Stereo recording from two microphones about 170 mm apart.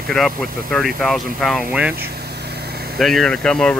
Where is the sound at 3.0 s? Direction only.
Centre (ahead or behind).